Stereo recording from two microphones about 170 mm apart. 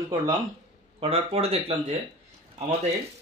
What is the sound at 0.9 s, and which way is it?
Speech, 35° right (ahead or behind).